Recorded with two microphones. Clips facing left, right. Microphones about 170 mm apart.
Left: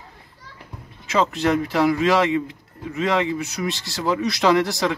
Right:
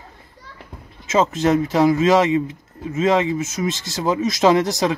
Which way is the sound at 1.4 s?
20° right (ahead or behind).